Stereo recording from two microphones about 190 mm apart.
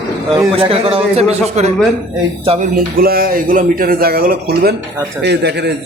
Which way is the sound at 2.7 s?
50° right (ahead or behind).